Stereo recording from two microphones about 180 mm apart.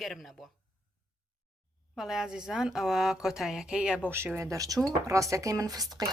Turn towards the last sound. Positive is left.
turn(degrees=-20)  # may be behind; listen again after turning